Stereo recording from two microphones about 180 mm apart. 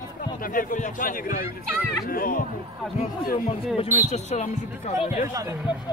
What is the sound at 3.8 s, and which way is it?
Speech, 35° left (ahead or behind).